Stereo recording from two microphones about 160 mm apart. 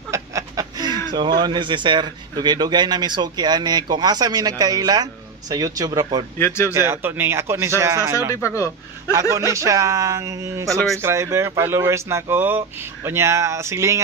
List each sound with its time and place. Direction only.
0.1 s a sound: 20° right (ahead or behind)
1.1 s speech: 25° right (ahead or behind)
6.3 s speech: 15° left (ahead or behind)
6.7 s speech: 15° right (ahead or behind)
8.4 s speech: 20° left (ahead or behind)
9.5 s speech: 20° right (ahead or behind)